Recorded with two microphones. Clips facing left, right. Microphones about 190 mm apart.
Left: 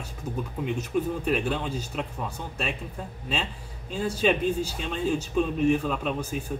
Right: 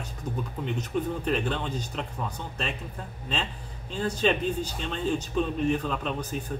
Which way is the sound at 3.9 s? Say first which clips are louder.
Left 1 dB; 10° left (ahead or behind).